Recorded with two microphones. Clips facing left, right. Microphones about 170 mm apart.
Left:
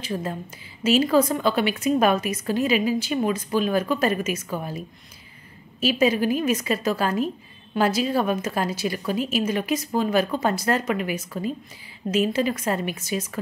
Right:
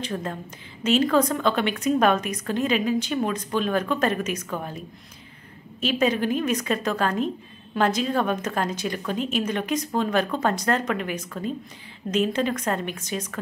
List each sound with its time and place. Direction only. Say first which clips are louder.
0.0 s a woman's voice: left 1 dB; 10° left (ahead or behind)